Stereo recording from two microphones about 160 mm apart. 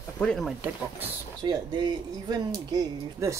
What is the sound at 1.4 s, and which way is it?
Speech, 25° right (ahead or behind).